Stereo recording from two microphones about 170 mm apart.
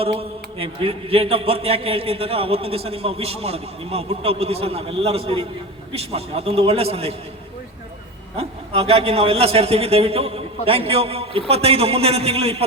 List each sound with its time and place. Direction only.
0.0 s a man's voice: 35° right (ahead or behind)
8.4 s a man's voice: 35° right (ahead or behind)